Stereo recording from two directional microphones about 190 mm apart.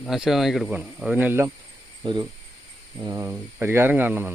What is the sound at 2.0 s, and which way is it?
Speech, 25° right (ahead or behind).